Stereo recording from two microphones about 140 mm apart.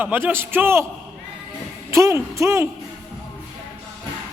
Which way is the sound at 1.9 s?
20° right (ahead or behind).